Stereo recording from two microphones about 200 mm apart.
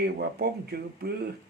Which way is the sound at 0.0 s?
50° right (ahead or behind).